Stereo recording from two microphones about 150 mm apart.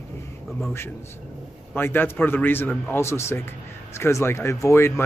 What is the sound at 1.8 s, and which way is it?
A man's voice, 15° left (ahead or behind).